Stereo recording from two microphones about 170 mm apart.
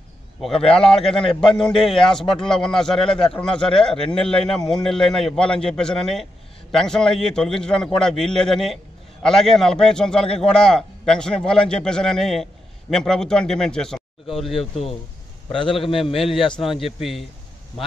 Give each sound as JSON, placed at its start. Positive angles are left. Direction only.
{"t": 0.5, "sound": "a man's voice", "side_deg": 35}
{"t": 0.7, "sound": "a man's voice", "side_deg": 5}
{"t": 15.7, "sound": "a man's voice", "side_deg": 30}
{"t": 16.2, "sound": "a man's voice", "side_deg": 0}